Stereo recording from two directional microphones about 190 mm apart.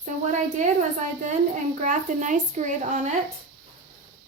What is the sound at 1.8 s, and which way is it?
Speech, 40° right (ahead or behind).